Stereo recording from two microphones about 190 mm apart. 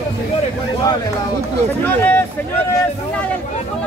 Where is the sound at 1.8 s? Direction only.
10° left (ahead or behind).